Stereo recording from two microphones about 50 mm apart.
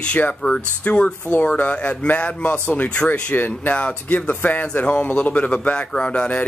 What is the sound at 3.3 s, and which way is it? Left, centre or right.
Speech, left.